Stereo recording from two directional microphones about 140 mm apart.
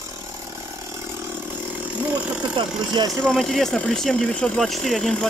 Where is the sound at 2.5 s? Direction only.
35° right (ahead or behind).